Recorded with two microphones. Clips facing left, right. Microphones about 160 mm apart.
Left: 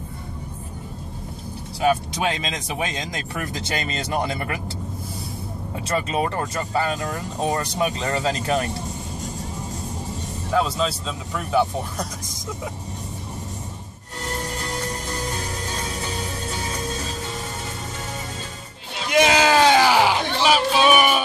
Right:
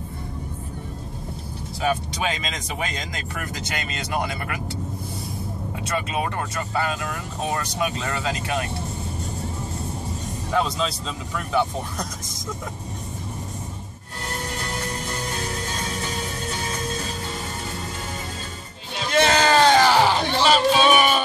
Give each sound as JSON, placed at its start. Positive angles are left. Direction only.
{"t": 3.7, "sound": "speech", "side_deg": 30}
{"t": 5.9, "sound": "speech", "side_deg": 35}
{"t": 10.5, "sound": "speech", "side_deg": 5}
{"t": 19.0, "sound": "music", "side_deg": 10}